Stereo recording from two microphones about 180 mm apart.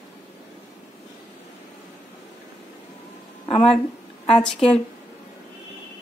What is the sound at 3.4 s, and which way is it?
Speech, 35° left (ahead or behind).